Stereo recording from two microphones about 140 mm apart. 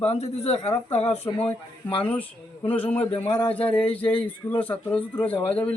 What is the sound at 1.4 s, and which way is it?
Speech, 10° left (ahead or behind).